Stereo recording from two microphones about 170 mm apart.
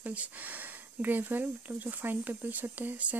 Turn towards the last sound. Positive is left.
turn(degrees=-10)  # may be behind; listen again after turning